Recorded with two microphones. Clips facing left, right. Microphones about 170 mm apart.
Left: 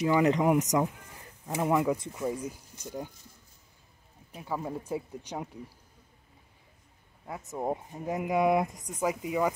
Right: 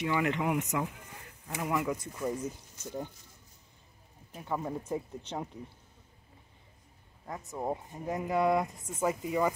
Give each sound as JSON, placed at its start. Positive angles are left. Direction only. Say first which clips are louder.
{"t": 0.0, "sound": "speech", "louder": "left 6 dB", "side_deg": 40}
{"t": 1.5, "sound": "speech", "louder": "left 5 dB", "side_deg": 30}
{"t": 2.1, "sound": "speech", "louder": "left 1 dB", "side_deg": 5}
{"t": 4.3, "sound": "speech", "louder": "even", "side_deg": 5}
{"t": 7.4, "sound": "speech", "louder": "left 3 dB", "side_deg": 15}